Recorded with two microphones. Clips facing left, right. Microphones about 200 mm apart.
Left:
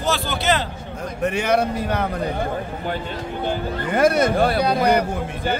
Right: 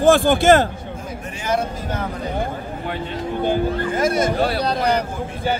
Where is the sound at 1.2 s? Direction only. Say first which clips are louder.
Left 5 dB; 70° left (ahead or behind).